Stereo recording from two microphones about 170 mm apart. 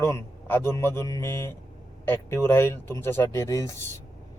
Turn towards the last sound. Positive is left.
turn(degrees=20)  # may be behind; listen again after turning